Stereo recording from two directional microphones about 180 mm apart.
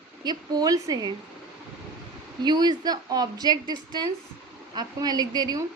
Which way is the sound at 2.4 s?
25° right (ahead or behind).